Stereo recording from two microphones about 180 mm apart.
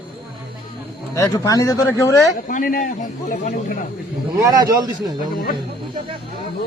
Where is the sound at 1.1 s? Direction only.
20° left (ahead or behind).